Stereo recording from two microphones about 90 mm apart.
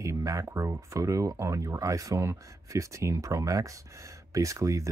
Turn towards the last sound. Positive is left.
turn(degrees=-35)  # may be behind; listen again after turning